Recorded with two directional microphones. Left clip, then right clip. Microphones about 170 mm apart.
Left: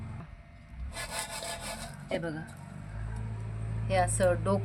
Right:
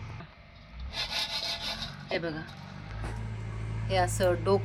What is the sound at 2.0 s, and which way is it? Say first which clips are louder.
Speech: right 1 dB; 25° left (ahead or behind).